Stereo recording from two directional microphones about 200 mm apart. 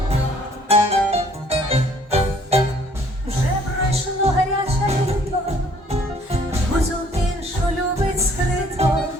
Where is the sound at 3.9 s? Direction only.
30° right (ahead or behind).